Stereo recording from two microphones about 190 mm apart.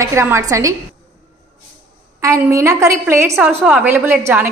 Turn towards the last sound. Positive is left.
turn(degrees=-10)  # may be behind; listen again after turning